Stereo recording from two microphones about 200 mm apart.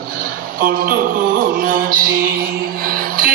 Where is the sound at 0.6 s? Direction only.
45° right (ahead or behind).